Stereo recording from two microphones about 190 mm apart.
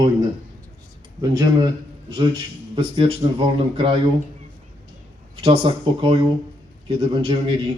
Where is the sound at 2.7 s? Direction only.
25° right (ahead or behind).